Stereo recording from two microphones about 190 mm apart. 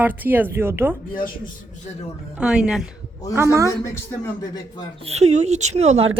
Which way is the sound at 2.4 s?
5° right (ahead or behind).